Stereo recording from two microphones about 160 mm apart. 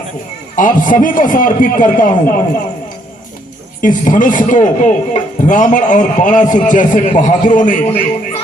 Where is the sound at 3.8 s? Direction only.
55° left (ahead or behind).